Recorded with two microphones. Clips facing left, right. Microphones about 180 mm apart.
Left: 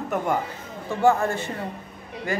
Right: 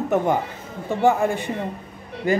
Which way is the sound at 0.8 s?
15° right (ahead or behind).